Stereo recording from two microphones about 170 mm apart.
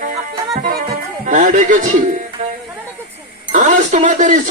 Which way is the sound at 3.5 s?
50° right (ahead or behind).